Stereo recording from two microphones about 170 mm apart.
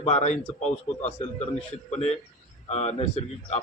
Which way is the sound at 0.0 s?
40° left (ahead or behind).